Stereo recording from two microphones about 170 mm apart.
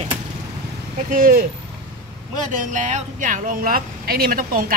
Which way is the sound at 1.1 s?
60° right (ahead or behind).